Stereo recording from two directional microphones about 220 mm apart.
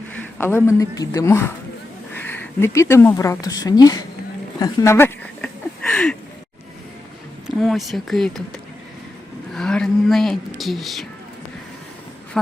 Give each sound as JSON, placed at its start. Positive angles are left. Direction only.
{"t": 0.2, "sound": "speech", "side_deg": 10}
{"t": 4.6, "sound": "a sound", "side_deg": 15}
{"t": 7.4, "sound": "speech", "side_deg": 0}
{"t": 9.5, "sound": "speech", "side_deg": 5}